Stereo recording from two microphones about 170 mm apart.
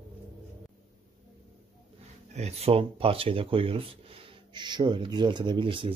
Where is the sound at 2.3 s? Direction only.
40° right (ahead or behind).